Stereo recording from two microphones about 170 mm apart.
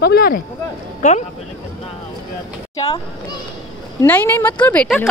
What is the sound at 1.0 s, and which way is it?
Speech, 45° left (ahead or behind).